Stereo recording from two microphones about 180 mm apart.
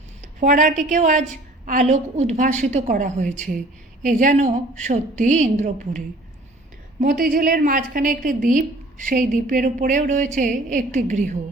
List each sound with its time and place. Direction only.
0.3 s a woman's voice: 45° right (ahead or behind)
7.0 s a woman's voice: 50° right (ahead or behind)